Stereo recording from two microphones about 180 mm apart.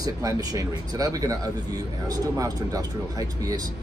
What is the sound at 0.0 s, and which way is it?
Speech, 20° right (ahead or behind).